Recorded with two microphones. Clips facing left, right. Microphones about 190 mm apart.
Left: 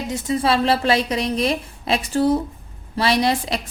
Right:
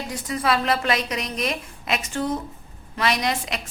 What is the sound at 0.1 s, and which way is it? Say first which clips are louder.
A woman's voice: left 4 dB; 25° left (ahead or behind).